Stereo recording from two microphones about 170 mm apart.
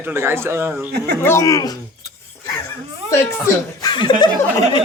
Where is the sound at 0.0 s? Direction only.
15° right (ahead or behind).